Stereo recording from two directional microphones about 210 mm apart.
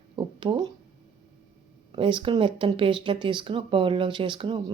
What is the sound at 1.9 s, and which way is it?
Speech, 25° right (ahead or behind).